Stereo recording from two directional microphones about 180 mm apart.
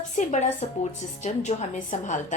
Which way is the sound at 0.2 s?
40° left (ahead or behind).